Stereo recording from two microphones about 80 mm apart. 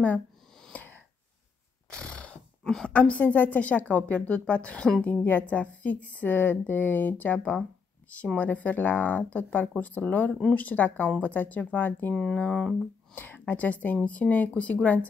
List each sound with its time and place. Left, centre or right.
0.7 s a sound: centre
2.9 s speech: centre
13.1 s a woman's voice: left